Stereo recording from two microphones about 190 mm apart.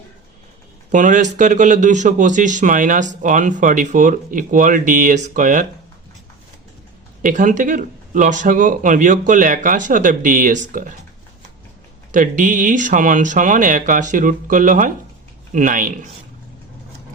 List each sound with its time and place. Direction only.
0.9 s speech: 40° right (ahead or behind)
7.2 s speech: 45° right (ahead or behind)
12.1 s speech: 45° right (ahead or behind)